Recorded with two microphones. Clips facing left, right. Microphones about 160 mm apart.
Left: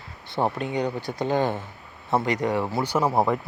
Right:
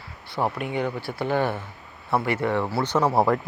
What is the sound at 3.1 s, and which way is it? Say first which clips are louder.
Speech: right 3 dB; 5° right (ahead or behind).